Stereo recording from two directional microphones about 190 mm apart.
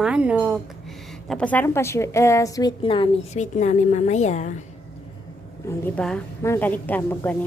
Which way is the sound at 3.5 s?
40° left (ahead or behind).